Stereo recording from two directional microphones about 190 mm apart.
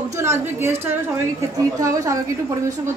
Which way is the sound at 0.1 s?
15° right (ahead or behind).